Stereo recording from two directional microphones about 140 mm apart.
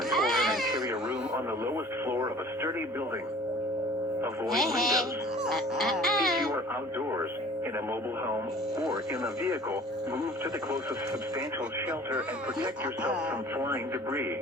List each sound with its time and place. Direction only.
0.1 s baby cry: centre (ahead or behind)
1.6 s radio: 15° right (ahead or behind)
4.4 s speech: centre (ahead or behind)
5.5 s music: centre (ahead or behind)
13.7 s speech: 20° right (ahead or behind)